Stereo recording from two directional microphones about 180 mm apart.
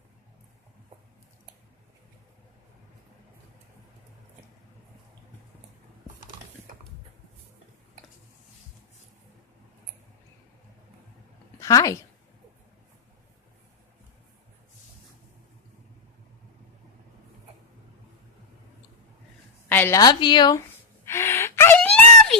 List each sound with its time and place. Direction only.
11.6 s speech: 20° left (ahead or behind)
19.6 s a woman's voice: 10° left (ahead or behind)
21.1 s gasp: 15° left (ahead or behind)